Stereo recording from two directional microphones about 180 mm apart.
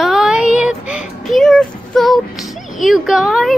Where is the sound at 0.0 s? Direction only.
Centre (ahead or behind).